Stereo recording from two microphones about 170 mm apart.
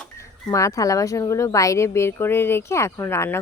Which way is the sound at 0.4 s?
20° left (ahead or behind).